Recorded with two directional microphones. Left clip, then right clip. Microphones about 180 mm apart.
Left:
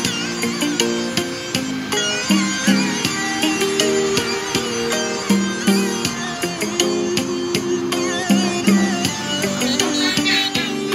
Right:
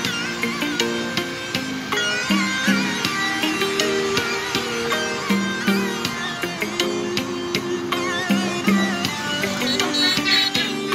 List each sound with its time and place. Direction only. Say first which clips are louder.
2.0 s music: left 1 dB; 20° left (ahead or behind)
5.3 s music: left 3 dB; 25° left (ahead or behind)
8.3 s music: left 3 dB; 25° left (ahead or behind)